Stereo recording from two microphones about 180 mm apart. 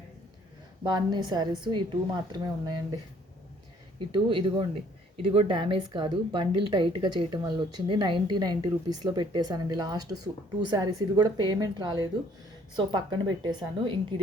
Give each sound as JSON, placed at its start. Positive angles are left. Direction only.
{"t": 0.9, "sound": "speech", "side_deg": -25}
{"t": 4.1, "sound": "speech", "side_deg": -25}